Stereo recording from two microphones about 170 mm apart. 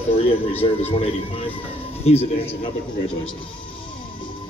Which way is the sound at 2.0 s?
35° left (ahead or behind).